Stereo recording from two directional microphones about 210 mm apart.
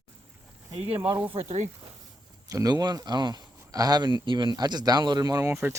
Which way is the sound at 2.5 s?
15° right (ahead or behind).